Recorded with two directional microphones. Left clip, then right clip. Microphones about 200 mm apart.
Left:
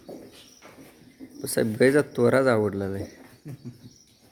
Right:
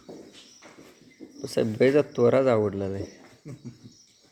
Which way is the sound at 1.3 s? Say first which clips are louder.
Left 1 dB; 15° left (ahead or behind).